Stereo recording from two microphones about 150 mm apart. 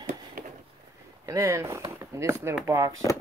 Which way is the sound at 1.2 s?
20° right (ahead or behind).